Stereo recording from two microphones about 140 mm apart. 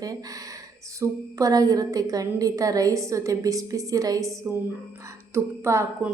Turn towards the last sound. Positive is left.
turn(degrees=-20)  # may be behind; listen again after turning